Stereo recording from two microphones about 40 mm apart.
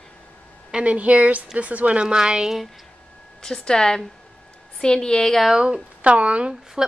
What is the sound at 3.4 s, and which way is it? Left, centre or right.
A woman's voice, centre.